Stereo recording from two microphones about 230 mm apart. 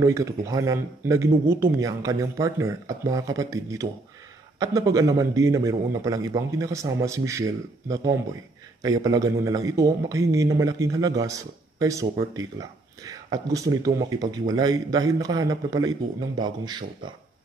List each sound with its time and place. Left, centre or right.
0.0 s a man's voice: centre